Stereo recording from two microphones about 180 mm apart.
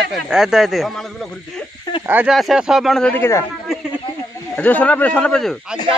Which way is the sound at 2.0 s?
10° right (ahead or behind).